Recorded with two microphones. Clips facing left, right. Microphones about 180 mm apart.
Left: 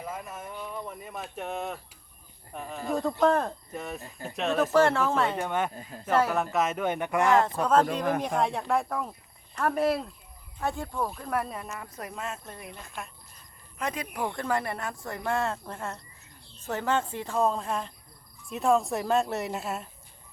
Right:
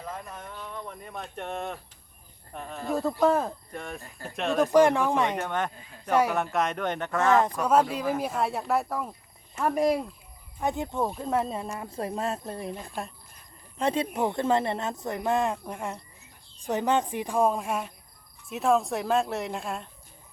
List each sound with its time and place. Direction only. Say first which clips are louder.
0.0 s speech: left 1 dB; 5° left (ahead or behind)
4.0 s speech: left 2 dB; 20° left (ahead or behind)
4.7 s speech: right 4 dB; 15° right (ahead or behind)
5.4 s speech: left 1 dB; 10° left (ahead or behind)
5.7 s speech: left 7 dB; 40° left (ahead or behind)
6.1 s speech: right 1 dB; 10° right (ahead or behind)
6.3 s speech: even; centre (ahead or behind)
7.6 s speech: even; 10° right (ahead or behind)